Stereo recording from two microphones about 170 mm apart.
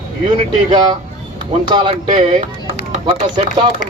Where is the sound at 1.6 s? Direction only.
25° right (ahead or behind).